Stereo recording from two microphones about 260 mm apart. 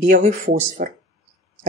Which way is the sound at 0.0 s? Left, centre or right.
Right.